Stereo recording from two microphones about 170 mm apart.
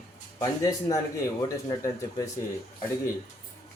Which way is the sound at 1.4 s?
20° left (ahead or behind).